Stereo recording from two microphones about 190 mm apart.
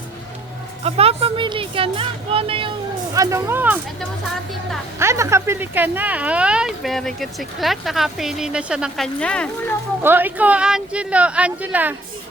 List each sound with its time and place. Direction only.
0.8 s a woman's voice: 30° right (ahead or behind)
3.2 s speech: 15° right (ahead or behind)
4.9 s speech: 15° right (ahead or behind)
9.2 s speech: 5° left (ahead or behind)
10.0 s speech: 10° right (ahead or behind)